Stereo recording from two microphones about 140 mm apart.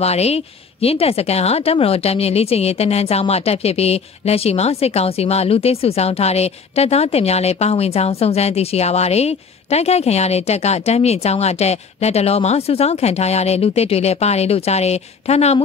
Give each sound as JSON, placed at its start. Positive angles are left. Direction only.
{"t": 0.0, "sound": "speech", "side_deg": 50}